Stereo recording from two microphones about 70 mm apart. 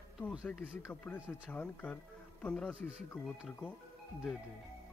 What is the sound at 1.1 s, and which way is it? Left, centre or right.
Speech, centre.